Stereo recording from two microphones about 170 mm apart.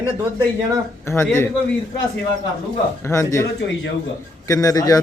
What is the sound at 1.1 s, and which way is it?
Speech, 15° left (ahead or behind).